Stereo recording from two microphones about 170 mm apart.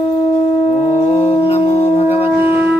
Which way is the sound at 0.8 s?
35° left (ahead or behind).